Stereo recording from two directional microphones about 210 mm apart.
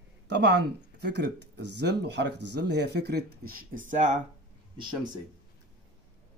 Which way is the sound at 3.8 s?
35° right (ahead or behind).